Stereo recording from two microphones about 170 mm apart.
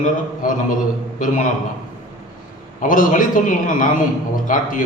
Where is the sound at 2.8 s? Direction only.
50° left (ahead or behind).